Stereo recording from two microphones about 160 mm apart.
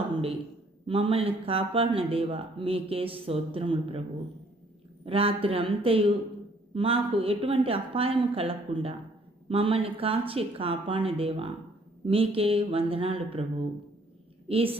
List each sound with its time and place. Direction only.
0.9 s speech: 35° right (ahead or behind)
5.0 s speech: 35° right (ahead or behind)
14.4 s a woman's voice: 35° right (ahead or behind)